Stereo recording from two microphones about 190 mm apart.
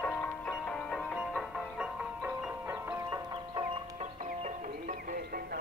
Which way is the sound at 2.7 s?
15° right (ahead or behind).